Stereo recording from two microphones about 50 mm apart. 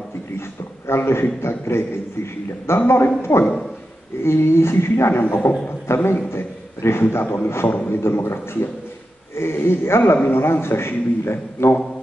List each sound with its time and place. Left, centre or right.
0.4 s a sound: left
1.4 s speech: left
5.2 s a man's voice: left
5.9 s a man's voice: left